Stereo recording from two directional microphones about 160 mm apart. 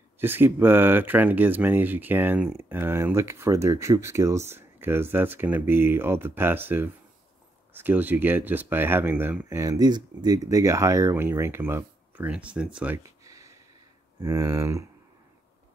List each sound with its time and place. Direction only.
0.2 s speech: 15° right (ahead or behind)